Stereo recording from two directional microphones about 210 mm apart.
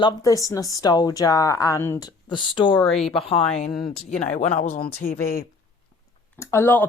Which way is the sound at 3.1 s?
25° left (ahead or behind).